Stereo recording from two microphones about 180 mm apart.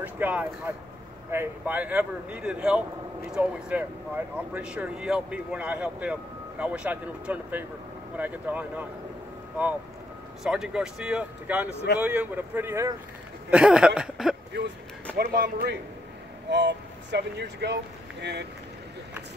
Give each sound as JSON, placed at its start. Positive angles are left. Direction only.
{"t": 0.0, "sound": "speech", "side_deg": -10}
{"t": 10.4, "sound": "speech", "side_deg": -5}
{"t": 15.1, "sound": "speech", "side_deg": -60}
{"t": 16.4, "sound": "speech", "side_deg": -75}